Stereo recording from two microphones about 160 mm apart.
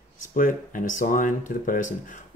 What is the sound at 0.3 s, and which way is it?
Speech, 55° left (ahead or behind).